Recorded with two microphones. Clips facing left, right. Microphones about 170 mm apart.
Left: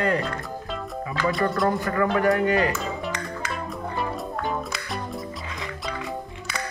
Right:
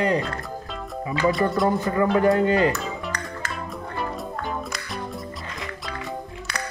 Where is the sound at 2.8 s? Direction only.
Centre (ahead or behind).